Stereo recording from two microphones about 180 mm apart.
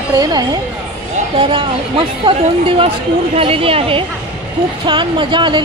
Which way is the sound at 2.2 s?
30° right (ahead or behind).